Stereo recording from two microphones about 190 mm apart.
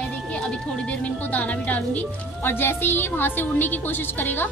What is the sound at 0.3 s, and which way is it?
A woman's voice, 5° left (ahead or behind).